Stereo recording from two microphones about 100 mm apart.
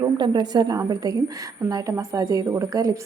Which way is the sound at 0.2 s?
45° right (ahead or behind).